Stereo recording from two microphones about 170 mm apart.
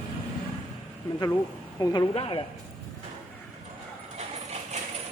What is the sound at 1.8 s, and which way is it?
Speech, 25° left (ahead or behind).